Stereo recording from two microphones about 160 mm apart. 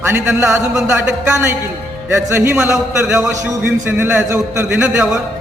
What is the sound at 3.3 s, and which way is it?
A man's voice, 15° right (ahead or behind).